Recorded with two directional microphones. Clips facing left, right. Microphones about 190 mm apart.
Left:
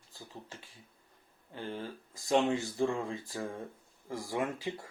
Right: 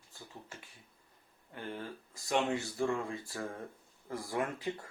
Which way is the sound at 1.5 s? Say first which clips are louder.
Left 2 dB; 30° left (ahead or behind).